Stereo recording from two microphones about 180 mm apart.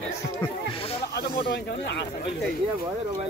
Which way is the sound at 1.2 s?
70° left (ahead or behind).